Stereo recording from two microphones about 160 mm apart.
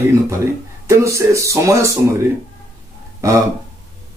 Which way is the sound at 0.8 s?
20° right (ahead or behind).